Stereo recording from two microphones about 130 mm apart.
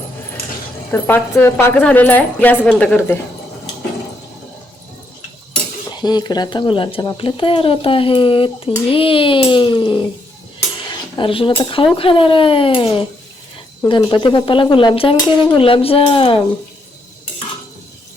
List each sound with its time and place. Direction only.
0.9 s a woman's voice: 15° left (ahead or behind)
6.0 s speech: 30° left (ahead or behind)
11.2 s speech: 40° left (ahead or behind)